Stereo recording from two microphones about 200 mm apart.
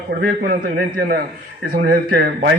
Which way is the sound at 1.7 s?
50° right (ahead or behind).